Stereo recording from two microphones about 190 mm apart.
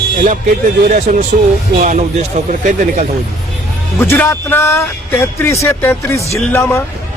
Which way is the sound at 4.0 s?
10° left (ahead or behind).